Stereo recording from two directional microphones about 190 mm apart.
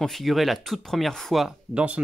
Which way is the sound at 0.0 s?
Centre (ahead or behind).